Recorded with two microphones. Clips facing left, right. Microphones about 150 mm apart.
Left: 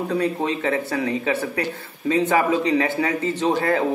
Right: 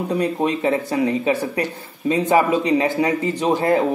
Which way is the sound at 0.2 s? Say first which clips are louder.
Right 3 dB; 20° right (ahead or behind).